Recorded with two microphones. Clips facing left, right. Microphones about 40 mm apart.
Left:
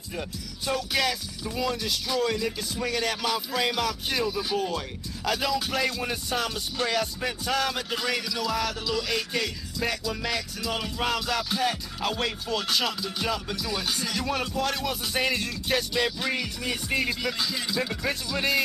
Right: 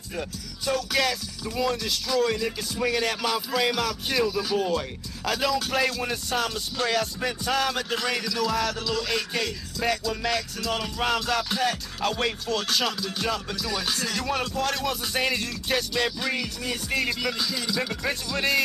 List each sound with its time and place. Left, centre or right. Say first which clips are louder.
0.7 s music: right 2 dB; centre
4.3 s music: right 2 dB; centre
4.6 s music: right 3 dB; centre
17.7 s music: left 1 dB; centre